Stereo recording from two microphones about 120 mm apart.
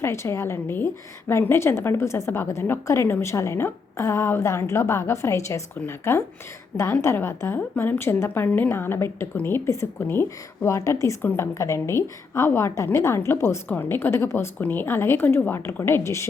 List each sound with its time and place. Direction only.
0.0 s a woman's voice: 20° left (ahead or behind)